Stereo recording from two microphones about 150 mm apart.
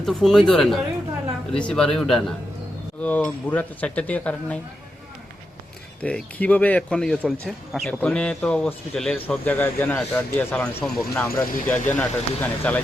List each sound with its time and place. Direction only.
0.0 s a man's voice: centre (ahead or behind)
6.0 s a man's voice: 10° left (ahead or behind)
11.1 s a man's voice: 20° left (ahead or behind)